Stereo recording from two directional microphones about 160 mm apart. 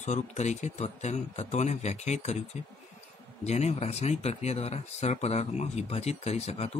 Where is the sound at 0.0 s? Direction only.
45° left (ahead or behind).